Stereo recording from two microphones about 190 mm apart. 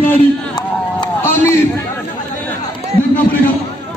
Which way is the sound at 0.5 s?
15° left (ahead or behind).